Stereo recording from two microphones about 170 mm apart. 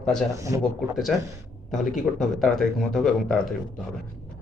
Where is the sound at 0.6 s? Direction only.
Centre (ahead or behind).